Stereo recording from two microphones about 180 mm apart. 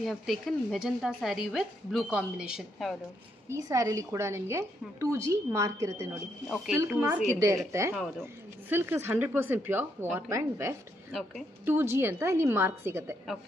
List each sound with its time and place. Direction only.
0.0 s a woman's voice: centre (ahead or behind)
3.4 s a woman's voice: 20° right (ahead or behind)
6.5 s a woman's voice: centre (ahead or behind)
7.3 s a woman's voice: 15° right (ahead or behind)